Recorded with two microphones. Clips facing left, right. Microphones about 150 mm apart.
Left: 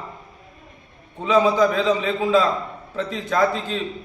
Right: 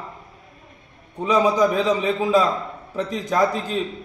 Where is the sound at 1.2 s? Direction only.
15° right (ahead or behind).